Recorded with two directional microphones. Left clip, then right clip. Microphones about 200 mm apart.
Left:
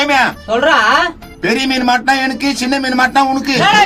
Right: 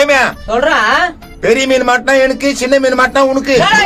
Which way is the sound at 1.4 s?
35° right (ahead or behind).